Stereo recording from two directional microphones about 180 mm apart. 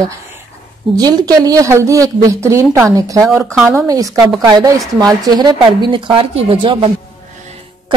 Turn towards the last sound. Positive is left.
turn(degrees=-30)  # may be behind; listen again after turning